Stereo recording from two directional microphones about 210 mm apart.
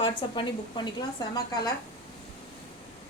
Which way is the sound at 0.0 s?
25° left (ahead or behind).